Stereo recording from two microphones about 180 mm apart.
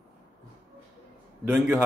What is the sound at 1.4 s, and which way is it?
Speech, 10° right (ahead or behind).